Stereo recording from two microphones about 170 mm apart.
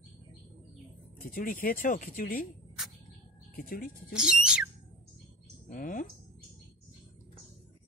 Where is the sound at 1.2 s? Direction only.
55° left (ahead or behind).